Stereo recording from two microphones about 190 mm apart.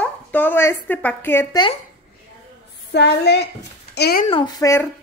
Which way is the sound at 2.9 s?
60° left (ahead or behind).